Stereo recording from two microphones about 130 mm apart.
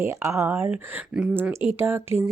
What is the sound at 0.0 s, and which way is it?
Speech, 20° right (ahead or behind).